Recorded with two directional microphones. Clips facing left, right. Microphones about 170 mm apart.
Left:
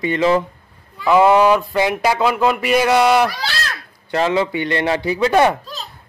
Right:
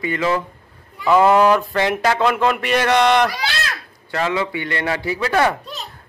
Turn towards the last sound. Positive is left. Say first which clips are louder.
# left 4 dB
turn(degrees=20)  # may be behind; listen again after turning